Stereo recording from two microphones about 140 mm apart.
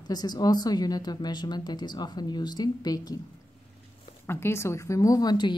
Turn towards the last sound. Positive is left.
turn(degrees=30)  # may be behind; listen again after turning